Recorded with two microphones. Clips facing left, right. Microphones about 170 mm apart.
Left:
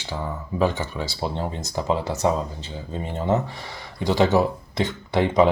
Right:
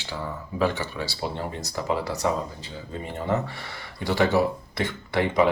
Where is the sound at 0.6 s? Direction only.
20° left (ahead or behind).